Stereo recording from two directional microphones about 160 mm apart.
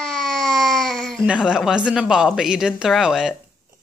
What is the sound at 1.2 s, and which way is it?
A woman's voice, 5° right (ahead or behind).